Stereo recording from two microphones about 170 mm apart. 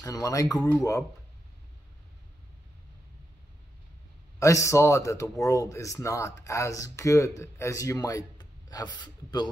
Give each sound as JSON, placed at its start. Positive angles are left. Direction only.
{"t": 0.0, "sound": "speech", "side_deg": 20}
{"t": 4.4, "sound": "a man's voice", "side_deg": 20}